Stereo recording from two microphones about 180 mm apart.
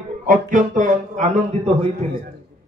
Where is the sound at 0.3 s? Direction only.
45° right (ahead or behind).